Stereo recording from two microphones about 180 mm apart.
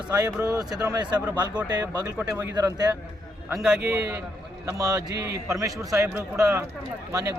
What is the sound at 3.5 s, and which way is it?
A man's voice, 5° right (ahead or behind).